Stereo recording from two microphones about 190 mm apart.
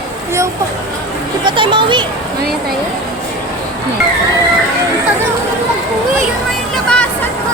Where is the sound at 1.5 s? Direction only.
25° right (ahead or behind).